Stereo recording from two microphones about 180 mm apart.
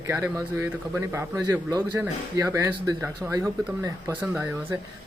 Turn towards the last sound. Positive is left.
turn(degrees=-10)  # may be behind; listen again after turning